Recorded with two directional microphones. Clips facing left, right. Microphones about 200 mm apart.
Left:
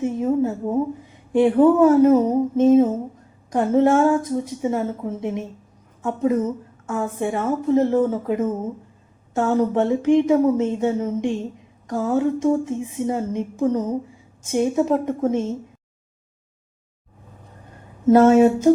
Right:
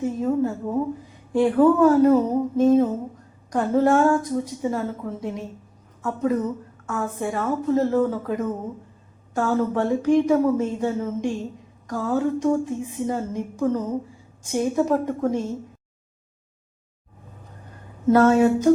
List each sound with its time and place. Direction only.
0.0 s a woman's voice: 20° left (ahead or behind)
18.1 s a woman's voice: 20° left (ahead or behind)